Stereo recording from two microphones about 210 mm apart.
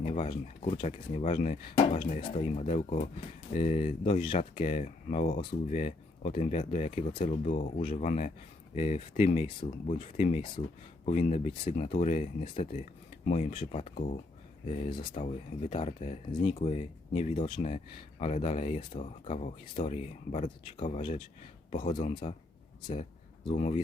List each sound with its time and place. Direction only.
0.0 s speech: 35° left (ahead or behind)
23.5 s speech: 35° left (ahead or behind)